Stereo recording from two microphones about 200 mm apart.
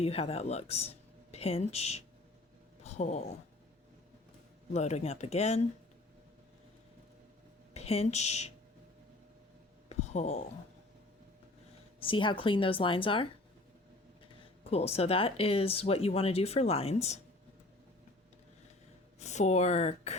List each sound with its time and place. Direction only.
0.0 s speech: 30° left (ahead or behind)
4.7 s speech: 35° left (ahead or behind)
7.7 s speech: 30° left (ahead or behind)
9.9 s a sound: 35° left (ahead or behind)
11.9 s speech: 25° left (ahead or behind)
14.6 s speech: 30° left (ahead or behind)
19.2 s speech: 35° left (ahead or behind)